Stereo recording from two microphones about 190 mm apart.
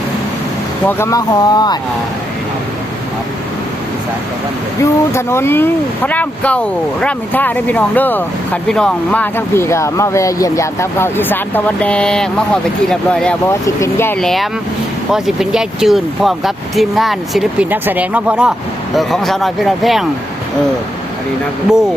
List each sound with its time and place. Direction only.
0.9 s speech: 15° left (ahead or behind)
4.8 s speech: 15° left (ahead or behind)
13.5 s speech: 15° left (ahead or behind)